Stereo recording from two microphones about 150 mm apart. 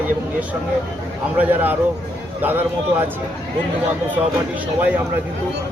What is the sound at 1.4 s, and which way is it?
A man's voice, 10° right (ahead or behind).